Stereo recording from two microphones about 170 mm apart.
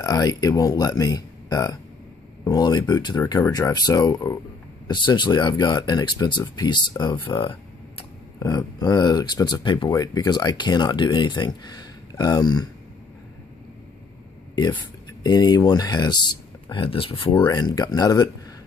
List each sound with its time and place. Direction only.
0.0 s speech: 25° left (ahead or behind)
14.5 s a sound: 25° left (ahead or behind)
15.2 s speech: 25° left (ahead or behind)